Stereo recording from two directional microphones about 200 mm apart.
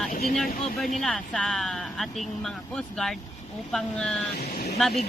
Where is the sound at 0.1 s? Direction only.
45° left (ahead or behind).